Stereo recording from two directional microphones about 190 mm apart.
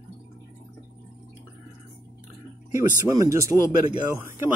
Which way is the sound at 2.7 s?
15° right (ahead or behind).